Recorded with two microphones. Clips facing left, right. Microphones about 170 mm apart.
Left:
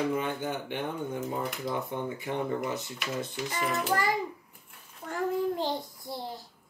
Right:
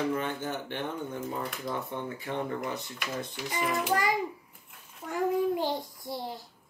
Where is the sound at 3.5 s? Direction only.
15° right (ahead or behind).